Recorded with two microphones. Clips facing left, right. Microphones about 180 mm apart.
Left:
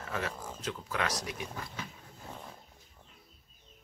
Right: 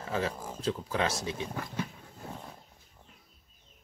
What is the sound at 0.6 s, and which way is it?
Speech, 30° right (ahead or behind).